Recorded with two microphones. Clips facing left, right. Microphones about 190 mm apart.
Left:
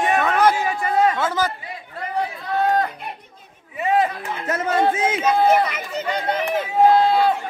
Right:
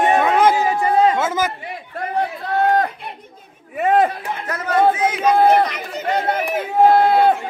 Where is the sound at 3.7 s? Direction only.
55° right (ahead or behind).